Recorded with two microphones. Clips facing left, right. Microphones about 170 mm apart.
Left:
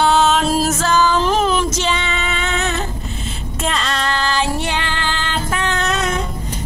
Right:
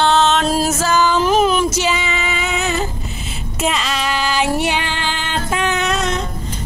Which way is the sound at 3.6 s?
5° right (ahead or behind).